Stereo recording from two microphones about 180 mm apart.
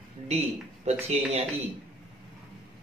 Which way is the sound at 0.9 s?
35° right (ahead or behind).